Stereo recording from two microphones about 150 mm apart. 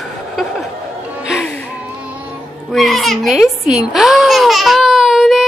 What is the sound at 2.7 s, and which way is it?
A child's voice, centre (ahead or behind).